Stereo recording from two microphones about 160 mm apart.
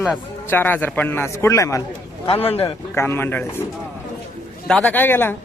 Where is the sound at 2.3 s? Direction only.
40° left (ahead or behind).